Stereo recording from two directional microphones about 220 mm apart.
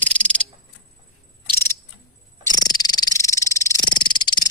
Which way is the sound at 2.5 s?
20° left (ahead or behind).